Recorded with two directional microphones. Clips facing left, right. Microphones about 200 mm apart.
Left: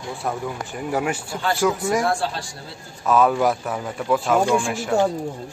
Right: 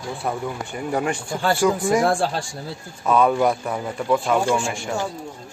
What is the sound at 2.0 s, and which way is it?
Speech, 50° right (ahead or behind).